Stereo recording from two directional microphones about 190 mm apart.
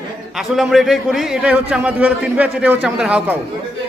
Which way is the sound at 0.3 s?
Centre (ahead or behind).